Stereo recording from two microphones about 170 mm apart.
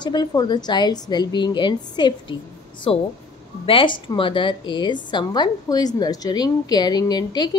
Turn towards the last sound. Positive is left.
turn(degrees=25)  # may be behind; listen again after turning